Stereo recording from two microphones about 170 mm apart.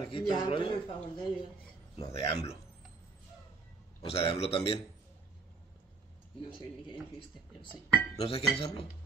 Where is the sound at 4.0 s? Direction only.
35° left (ahead or behind).